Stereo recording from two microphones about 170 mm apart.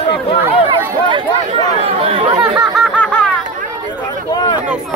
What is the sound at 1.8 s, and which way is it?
Speech, 30° right (ahead or behind).